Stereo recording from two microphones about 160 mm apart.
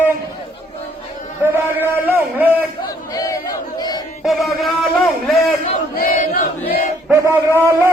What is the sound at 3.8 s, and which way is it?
Battle cry, 25° left (ahead or behind).